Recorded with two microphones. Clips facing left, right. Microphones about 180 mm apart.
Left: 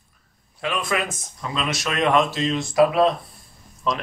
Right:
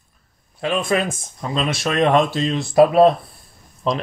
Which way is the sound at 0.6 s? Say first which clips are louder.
Right 5 dB; 30° right (ahead or behind).